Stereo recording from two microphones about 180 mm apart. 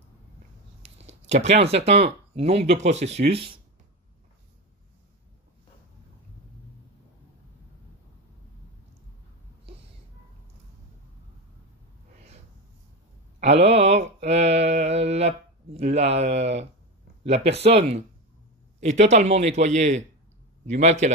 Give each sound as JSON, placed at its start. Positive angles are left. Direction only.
{"t": 1.3, "sound": "speech", "side_deg": -35}
{"t": 13.4, "sound": "mantra", "side_deg": -35}
{"t": 17.2, "sound": "speech", "side_deg": -35}